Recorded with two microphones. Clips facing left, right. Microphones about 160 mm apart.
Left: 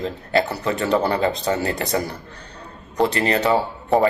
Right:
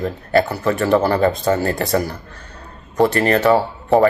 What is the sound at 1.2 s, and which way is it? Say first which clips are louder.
Speech: right 4 dB; 50° right (ahead or behind).